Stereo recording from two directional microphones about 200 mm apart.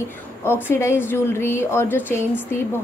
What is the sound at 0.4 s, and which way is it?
A woman's voice, 10° left (ahead or behind).